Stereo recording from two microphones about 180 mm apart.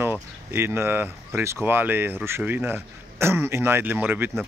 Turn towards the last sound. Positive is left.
turn(degrees=-10)  # may be behind; listen again after turning